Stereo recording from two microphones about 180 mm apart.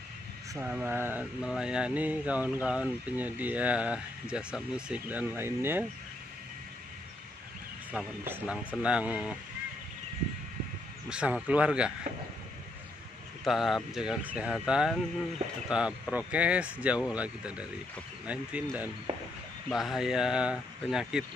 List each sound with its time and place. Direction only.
0.5 s a sound: 5° right (ahead or behind)
7.9 s speech: 5° right (ahead or behind)
11.1 s speech: 5° right (ahead or behind)
13.4 s speech: centre (ahead or behind)
15.7 s a sound: 5° right (ahead or behind)
19.1 s speech: 35° right (ahead or behind)
19.7 s speech: centre (ahead or behind)